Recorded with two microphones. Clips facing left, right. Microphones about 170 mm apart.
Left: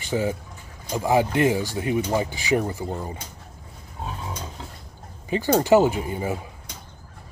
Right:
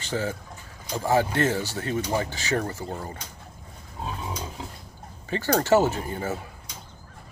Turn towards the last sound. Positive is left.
turn(degrees=15)  # may be behind; listen again after turning